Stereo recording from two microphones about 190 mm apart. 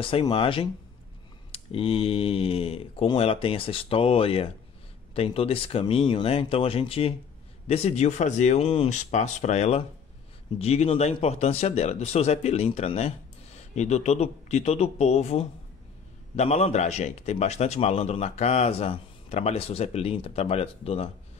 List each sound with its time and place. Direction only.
0.0 s a man's voice: 25° left (ahead or behind)